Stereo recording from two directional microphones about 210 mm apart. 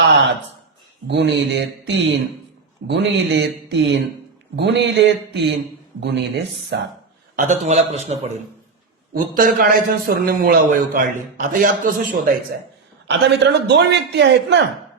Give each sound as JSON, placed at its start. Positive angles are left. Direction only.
{"t": 1.0, "sound": "a man's voice", "side_deg": -55}
{"t": 7.3, "sound": "a man's voice", "side_deg": -35}
{"t": 9.1, "sound": "a man's voice", "side_deg": -45}
{"t": 13.1, "sound": "a man's voice", "side_deg": -55}